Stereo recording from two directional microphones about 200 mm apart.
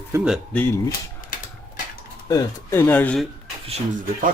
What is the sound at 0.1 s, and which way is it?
Speech, 15° right (ahead or behind).